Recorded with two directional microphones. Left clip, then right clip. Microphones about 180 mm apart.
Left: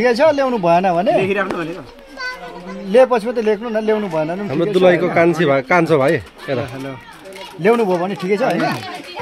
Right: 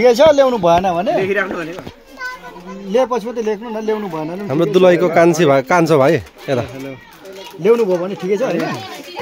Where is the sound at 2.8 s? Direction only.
10° left (ahead or behind).